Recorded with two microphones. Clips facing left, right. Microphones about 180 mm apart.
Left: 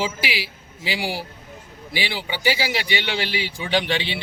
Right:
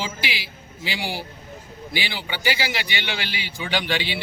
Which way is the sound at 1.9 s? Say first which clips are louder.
Left 2 dB; 30° left (ahead or behind).